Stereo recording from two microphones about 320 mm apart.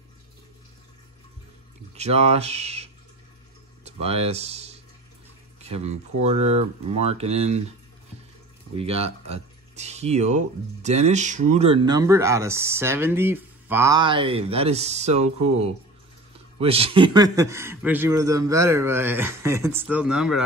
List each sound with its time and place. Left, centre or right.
2.0 s speech: centre
8.7 s speech: centre
16.5 s speech: centre